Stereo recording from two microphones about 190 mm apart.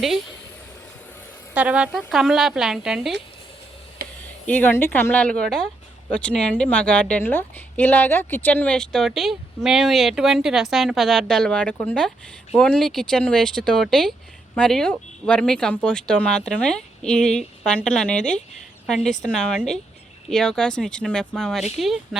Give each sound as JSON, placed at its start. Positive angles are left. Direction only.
{"t": 1.5, "sound": "a woman's voice", "side_deg": -5}
{"t": 4.4, "sound": "a woman's voice", "side_deg": 10}